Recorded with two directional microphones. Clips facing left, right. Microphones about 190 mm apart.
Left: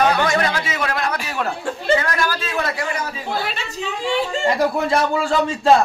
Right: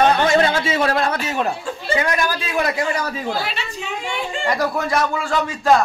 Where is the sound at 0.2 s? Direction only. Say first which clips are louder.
Right 3 dB; 25° right (ahead or behind).